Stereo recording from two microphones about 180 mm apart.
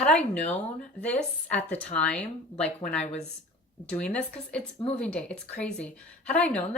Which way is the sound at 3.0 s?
35° left (ahead or behind).